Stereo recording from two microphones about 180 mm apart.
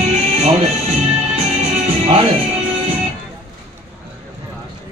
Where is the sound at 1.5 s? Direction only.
35° right (ahead or behind).